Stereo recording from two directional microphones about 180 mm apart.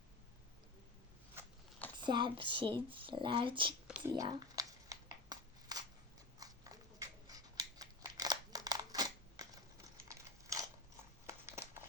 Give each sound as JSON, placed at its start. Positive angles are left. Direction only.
{"t": 2.0, "sound": "speech", "side_deg": -25}
{"t": 3.8, "sound": "whispering", "side_deg": -5}
{"t": 4.1, "sound": "shuffling cards", "side_deg": -25}
{"t": 6.4, "sound": "scissors", "side_deg": -20}
{"t": 10.4, "sound": "mechanisms", "side_deg": -20}
{"t": 11.4, "sound": "a sound", "side_deg": -15}